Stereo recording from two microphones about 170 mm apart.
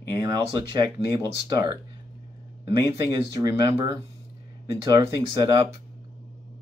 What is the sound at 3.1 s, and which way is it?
Speech, 20° right (ahead or behind).